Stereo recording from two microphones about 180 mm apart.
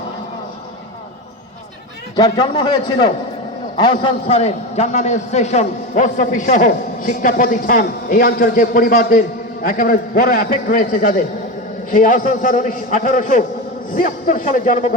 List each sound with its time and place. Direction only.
2.1 s a man's voice: 20° left (ahead or behind); by 14.9 s 50° left (ahead or behind)